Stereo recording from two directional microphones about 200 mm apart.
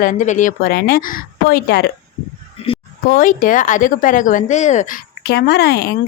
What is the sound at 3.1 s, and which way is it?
Speech, 45° left (ahead or behind).